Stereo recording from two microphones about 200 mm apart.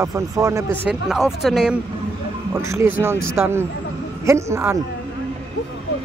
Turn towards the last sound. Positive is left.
turn(degrees=-15)  # may be behind; listen again after turning